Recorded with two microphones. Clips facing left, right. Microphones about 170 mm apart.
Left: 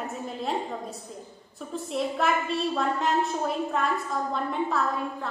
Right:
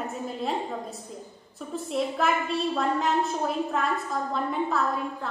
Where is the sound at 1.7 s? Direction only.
Centre (ahead or behind).